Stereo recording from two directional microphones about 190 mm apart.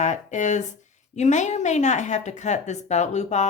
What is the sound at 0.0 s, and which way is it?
Speech, 40° left (ahead or behind).